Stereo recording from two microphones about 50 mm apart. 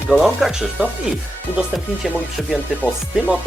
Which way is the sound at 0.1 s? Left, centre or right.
Centre.